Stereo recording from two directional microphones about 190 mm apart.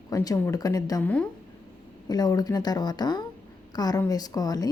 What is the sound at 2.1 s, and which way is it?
A woman's voice, 20° left (ahead or behind).